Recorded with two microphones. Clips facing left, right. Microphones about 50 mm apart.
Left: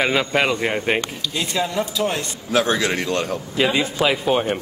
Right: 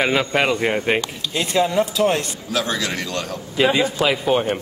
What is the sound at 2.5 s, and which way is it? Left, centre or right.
Speech, left.